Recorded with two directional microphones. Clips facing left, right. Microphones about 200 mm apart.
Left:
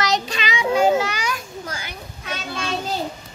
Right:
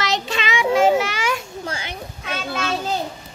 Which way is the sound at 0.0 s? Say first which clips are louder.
Left 1 dB; 25° right (ahead or behind).